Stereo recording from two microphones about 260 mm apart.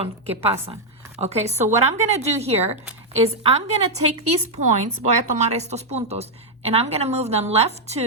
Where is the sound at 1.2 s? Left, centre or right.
Right.